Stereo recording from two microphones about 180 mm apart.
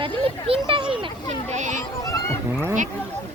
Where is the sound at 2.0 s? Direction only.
20° left (ahead or behind).